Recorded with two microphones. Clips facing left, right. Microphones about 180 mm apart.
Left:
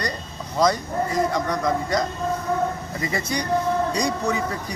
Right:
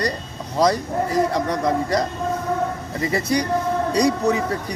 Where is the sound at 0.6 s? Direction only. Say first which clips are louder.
Right 2 dB; 35° right (ahead or behind).